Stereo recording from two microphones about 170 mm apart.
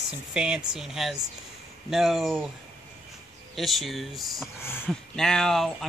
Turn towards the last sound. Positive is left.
turn(degrees=0)  # may be behind; listen again after turning